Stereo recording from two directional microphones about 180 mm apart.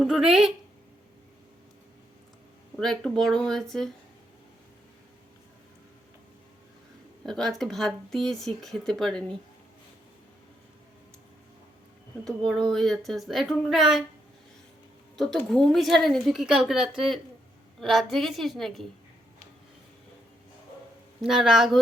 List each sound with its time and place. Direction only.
0.0 s speech: 5° right (ahead or behind)
2.7 s speech: centre (ahead or behind)
7.3 s speech: centre (ahead or behind)
12.2 s speech: 5° left (ahead or behind)
15.1 s speech: centre (ahead or behind)
21.2 s speech: 5° right (ahead or behind)